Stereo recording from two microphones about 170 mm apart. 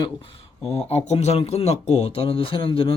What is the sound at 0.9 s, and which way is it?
Speech, 40° left (ahead or behind).